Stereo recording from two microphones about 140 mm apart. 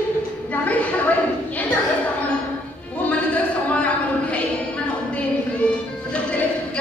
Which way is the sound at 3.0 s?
10° left (ahead or behind).